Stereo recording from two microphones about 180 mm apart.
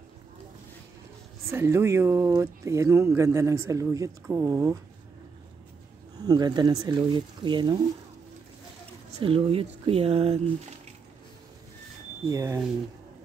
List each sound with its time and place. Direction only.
1.5 s speech: 15° right (ahead or behind)
6.2 s speech: 20° right (ahead or behind)
9.2 s speech: 30° right (ahead or behind)
12.3 s speech: 15° right (ahead or behind)